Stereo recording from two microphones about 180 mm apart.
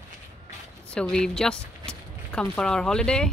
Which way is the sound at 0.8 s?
5° left (ahead or behind).